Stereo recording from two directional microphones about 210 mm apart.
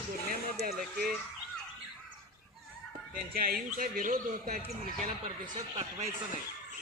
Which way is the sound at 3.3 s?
45° right (ahead or behind).